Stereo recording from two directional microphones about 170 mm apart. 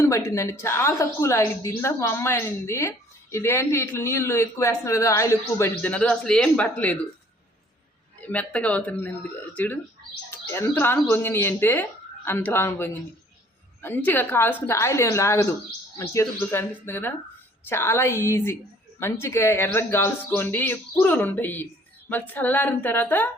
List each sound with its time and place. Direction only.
0.0 s speech: 15° left (ahead or behind)
8.2 s speech: 10° left (ahead or behind)